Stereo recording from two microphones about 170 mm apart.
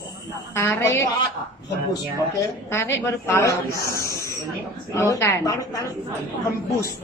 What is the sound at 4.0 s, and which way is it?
Snake, 15° left (ahead or behind).